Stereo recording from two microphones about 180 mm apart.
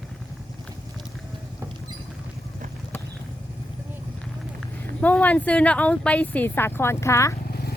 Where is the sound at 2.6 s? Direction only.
45° right (ahead or behind).